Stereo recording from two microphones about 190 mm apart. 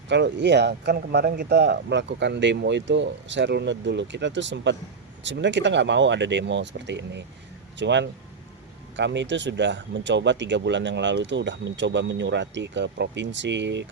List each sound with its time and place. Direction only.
0.1 s speech: 65° right (ahead or behind)